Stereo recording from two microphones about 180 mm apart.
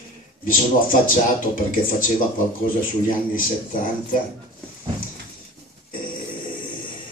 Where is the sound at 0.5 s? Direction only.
50° left (ahead or behind).